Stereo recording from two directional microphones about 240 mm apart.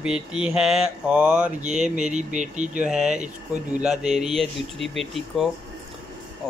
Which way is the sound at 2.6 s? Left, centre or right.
Centre.